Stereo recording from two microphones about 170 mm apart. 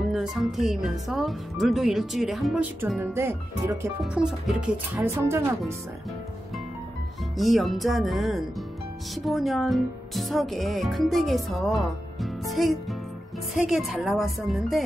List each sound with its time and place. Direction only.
0.1 s speech: centre (ahead or behind)
7.3 s speech: centre (ahead or behind)